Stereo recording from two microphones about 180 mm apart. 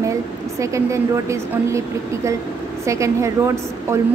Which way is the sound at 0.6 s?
15° right (ahead or behind).